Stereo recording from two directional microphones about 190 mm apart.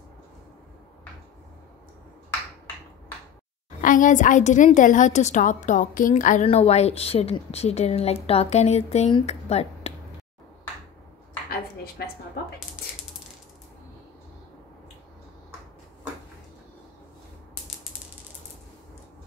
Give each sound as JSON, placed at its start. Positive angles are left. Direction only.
{"t": 3.8, "sound": "a woman's voice", "side_deg": 45}